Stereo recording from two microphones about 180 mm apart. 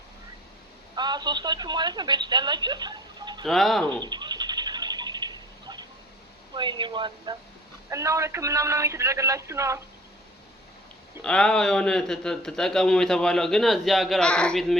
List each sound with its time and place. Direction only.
0.9 s speech: 25° right (ahead or behind)
3.4 s a man's voice: centre (ahead or behind)
3.8 s bird: 25° right (ahead or behind)
6.5 s a man's voice: 25° right (ahead or behind)
11.2 s a man's voice: 5° left (ahead or behind)